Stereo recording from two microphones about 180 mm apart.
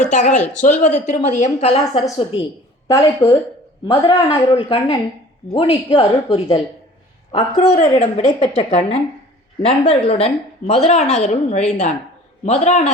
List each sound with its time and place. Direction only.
0.0 s a woman's voice: 45° left (ahead or behind)